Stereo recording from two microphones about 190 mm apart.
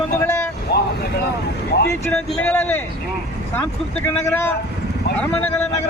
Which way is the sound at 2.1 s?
5° left (ahead or behind).